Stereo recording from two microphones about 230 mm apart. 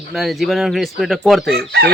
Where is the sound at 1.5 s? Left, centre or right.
Right.